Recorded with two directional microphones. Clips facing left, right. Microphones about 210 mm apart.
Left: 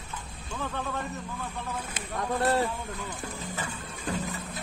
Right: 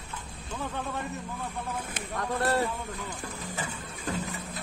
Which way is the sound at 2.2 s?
20° left (ahead or behind).